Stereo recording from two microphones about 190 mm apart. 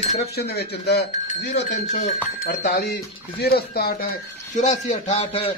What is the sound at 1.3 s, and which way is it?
Speech, 40° left (ahead or behind).